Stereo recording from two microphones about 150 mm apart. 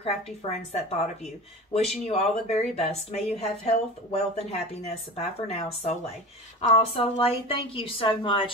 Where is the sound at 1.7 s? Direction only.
45° left (ahead or behind).